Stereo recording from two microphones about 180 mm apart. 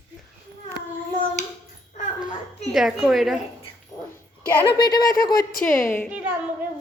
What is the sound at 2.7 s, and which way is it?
Speech, centre (ahead or behind).